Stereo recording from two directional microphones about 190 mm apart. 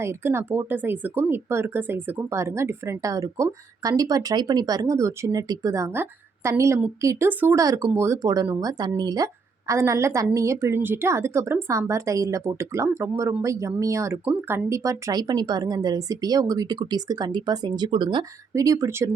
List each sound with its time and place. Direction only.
0.0 s speech: 15° right (ahead or behind)